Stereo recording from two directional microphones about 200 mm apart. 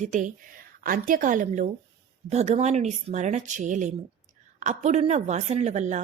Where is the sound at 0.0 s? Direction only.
40° right (ahead or behind).